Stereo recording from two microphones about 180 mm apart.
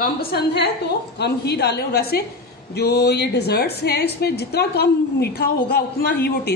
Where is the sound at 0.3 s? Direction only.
70° left (ahead or behind).